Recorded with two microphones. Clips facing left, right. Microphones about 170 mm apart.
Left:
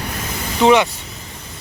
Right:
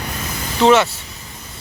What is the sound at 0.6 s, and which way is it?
Speech, 15° left (ahead or behind).